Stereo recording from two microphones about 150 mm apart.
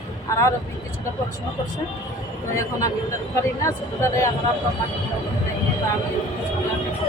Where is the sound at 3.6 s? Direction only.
20° left (ahead or behind).